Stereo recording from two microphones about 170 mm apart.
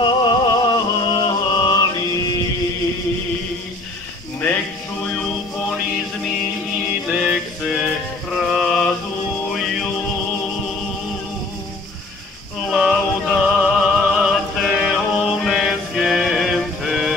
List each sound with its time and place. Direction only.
0.0 s music: 30° left (ahead or behind)
7.1 s music: 5° right (ahead or behind)
8.4 s mantra: centre (ahead or behind)
9.5 s music: centre (ahead or behind)
12.6 s music: 5° right (ahead or behind)